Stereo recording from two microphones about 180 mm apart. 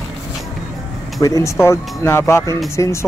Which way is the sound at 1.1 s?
20° left (ahead or behind).